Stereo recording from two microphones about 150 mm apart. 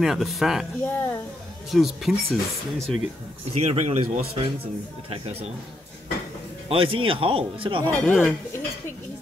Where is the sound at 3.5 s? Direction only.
45° right (ahead or behind).